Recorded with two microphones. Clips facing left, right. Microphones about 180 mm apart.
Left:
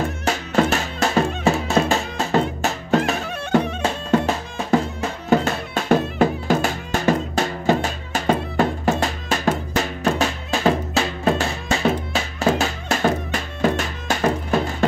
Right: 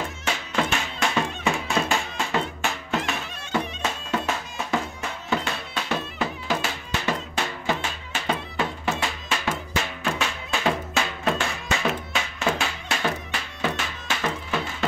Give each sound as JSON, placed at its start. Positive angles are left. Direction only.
{"t": 0.2, "sound": "music", "side_deg": 40}
{"t": 3.8, "sound": "music", "side_deg": 35}